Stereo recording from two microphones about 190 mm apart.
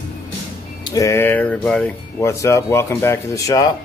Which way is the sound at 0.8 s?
20° left (ahead or behind).